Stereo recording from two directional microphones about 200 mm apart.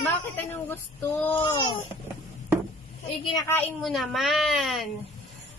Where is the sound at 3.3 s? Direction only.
15° left (ahead or behind).